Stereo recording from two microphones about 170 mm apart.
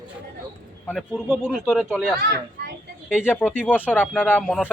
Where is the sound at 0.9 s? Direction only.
Centre (ahead or behind).